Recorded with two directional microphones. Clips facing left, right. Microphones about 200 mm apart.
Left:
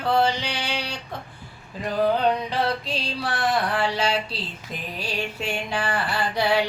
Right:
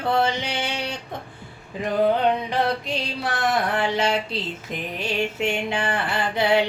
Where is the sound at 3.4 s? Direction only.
20° right (ahead or behind).